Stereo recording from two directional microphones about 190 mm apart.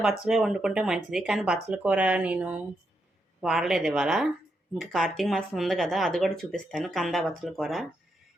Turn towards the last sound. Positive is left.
turn(degrees=0)  # may be behind; listen again after turning